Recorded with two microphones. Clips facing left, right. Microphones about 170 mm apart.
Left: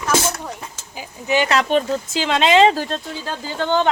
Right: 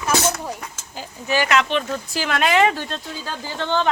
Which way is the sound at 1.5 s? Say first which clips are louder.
Left 3 dB; 40° left (ahead or behind).